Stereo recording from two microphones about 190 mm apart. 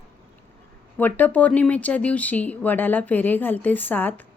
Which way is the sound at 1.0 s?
10° left (ahead or behind).